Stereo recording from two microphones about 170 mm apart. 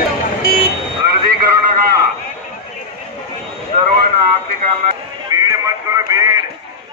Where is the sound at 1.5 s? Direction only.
20° right (ahead or behind).